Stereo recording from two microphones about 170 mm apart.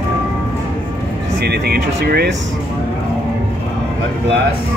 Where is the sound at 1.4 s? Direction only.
70° right (ahead or behind).